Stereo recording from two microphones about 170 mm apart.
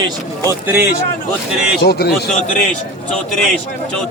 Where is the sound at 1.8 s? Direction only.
70° left (ahead or behind).